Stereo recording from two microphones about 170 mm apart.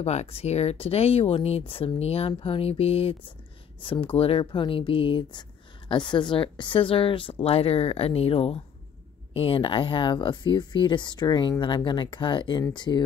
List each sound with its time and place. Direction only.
0.0 s speech: 40° left (ahead or behind)